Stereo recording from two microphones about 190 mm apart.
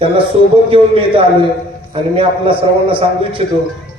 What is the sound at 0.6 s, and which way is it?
A man's voice, 30° right (ahead or behind).